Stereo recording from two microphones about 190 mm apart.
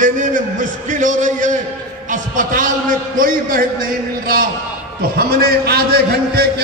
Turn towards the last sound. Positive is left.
turn(degrees=-55)  # may be behind; listen again after turning